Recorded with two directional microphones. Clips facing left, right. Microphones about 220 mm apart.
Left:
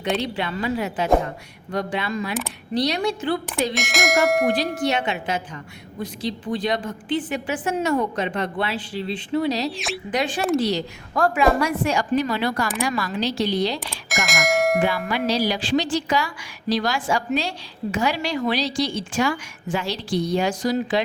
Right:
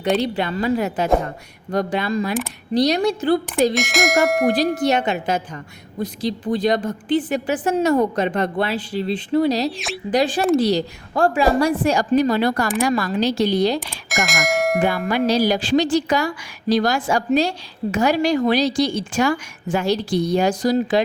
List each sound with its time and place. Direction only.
0.2 s a woman's voice: 40° right (ahead or behind)
3.8 s bell: centre (ahead or behind)
4.8 s a woman's voice: 40° right (ahead or behind)
9.6 s bell: centre (ahead or behind)
10.1 s a woman's voice: 35° right (ahead or behind)
13.7 s speech: centre (ahead or behind)
14.8 s a woman's voice: 45° right (ahead or behind)